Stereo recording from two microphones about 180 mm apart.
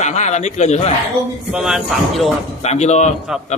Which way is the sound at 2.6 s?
40° left (ahead or behind).